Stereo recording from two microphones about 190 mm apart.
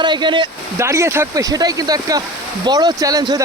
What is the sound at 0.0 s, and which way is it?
Speech, 25° right (ahead or behind).